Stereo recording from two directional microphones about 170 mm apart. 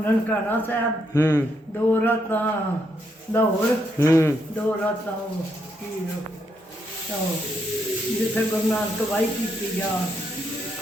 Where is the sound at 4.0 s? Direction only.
15° left (ahead or behind).